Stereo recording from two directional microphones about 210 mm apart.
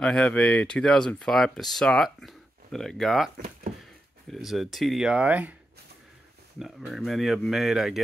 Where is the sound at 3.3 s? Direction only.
45° right (ahead or behind).